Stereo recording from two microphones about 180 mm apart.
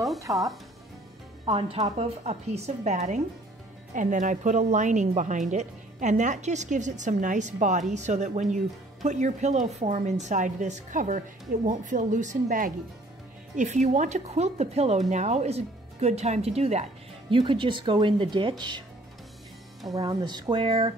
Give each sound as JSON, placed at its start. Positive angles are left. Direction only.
{"t": 0.2, "sound": "speech", "side_deg": -20}
{"t": 1.4, "sound": "a woman's voice", "side_deg": -30}
{"t": 19.9, "sound": "speech", "side_deg": -20}